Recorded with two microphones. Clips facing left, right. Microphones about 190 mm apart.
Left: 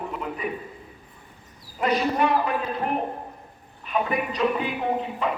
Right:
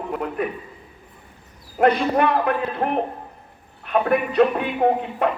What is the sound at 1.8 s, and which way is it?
A man's voice, 60° right (ahead or behind).